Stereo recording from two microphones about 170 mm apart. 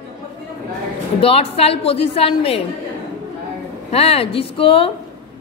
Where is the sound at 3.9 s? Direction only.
35° left (ahead or behind).